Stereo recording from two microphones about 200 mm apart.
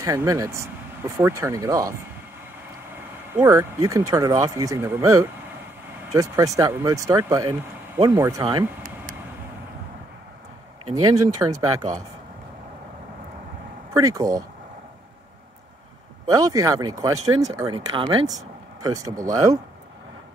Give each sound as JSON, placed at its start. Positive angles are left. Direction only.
{"t": 0.0, "sound": "speech", "side_deg": -15}
{"t": 3.3, "sound": "speech", "side_deg": -15}
{"t": 10.9, "sound": "speech", "side_deg": -90}
{"t": 11.1, "sound": "speech", "side_deg": -20}
{"t": 13.9, "sound": "speech", "side_deg": -15}
{"t": 16.3, "sound": "speech", "side_deg": -15}